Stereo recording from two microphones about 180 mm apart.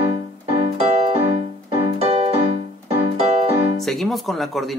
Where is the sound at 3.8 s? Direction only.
Centre (ahead or behind).